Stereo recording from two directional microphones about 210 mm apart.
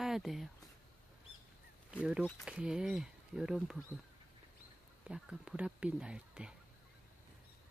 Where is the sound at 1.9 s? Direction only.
5° right (ahead or behind).